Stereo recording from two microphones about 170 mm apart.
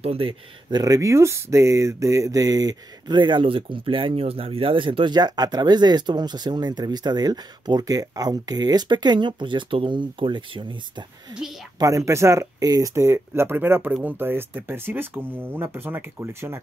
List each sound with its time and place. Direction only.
0.0 s speech: 35° right (ahead or behind); by 16.6 s 15° right (ahead or behind)